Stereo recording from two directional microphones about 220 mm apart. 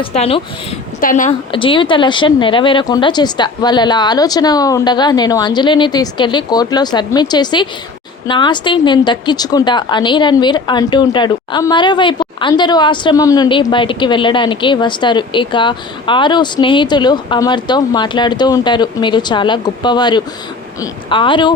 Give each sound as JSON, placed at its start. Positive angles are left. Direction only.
{"t": 0.0, "sound": "a woman's voice", "side_deg": 25}
{"t": 1.5, "sound": "a woman's voice", "side_deg": 25}